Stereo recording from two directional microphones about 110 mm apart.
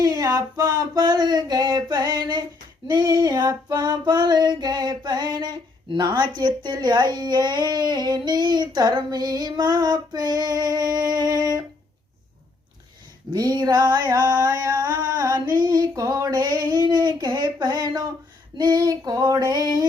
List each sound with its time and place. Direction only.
0.0 s female singing: 35° right (ahead or behind)
13.3 s female singing: 35° right (ahead or behind)